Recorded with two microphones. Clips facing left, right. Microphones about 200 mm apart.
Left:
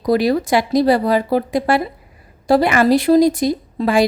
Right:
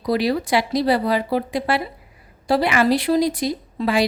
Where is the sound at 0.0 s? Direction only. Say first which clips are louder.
Left 5 dB; 45° left (ahead or behind).